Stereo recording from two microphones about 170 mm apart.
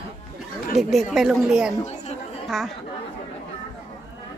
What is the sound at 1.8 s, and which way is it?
Chatter, 40° left (ahead or behind).